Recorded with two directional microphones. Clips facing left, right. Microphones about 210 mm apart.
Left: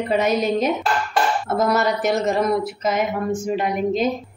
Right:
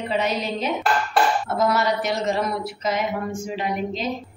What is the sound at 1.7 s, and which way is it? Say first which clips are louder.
A woman's voice: left 3 dB; 50° left (ahead or behind).